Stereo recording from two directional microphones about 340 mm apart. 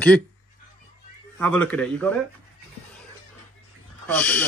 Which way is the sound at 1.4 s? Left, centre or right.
Centre.